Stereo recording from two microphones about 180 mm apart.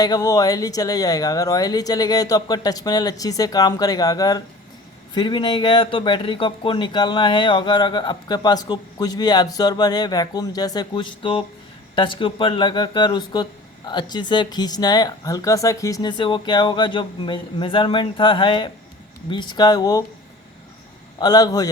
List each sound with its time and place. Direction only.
0.0 s speech: 20° left (ahead or behind)
21.2 s speech: 20° left (ahead or behind)